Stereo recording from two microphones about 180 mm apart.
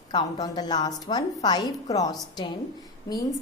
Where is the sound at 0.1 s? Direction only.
20° left (ahead or behind).